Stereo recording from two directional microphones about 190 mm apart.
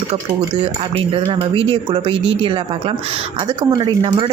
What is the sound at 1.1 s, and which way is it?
Speech, 25° right (ahead or behind).